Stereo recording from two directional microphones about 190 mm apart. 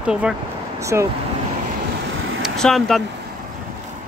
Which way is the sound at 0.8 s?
15° right (ahead or behind).